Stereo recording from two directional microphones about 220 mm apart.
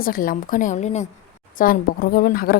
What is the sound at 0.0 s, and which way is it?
A woman's voice, 40° left (ahead or behind).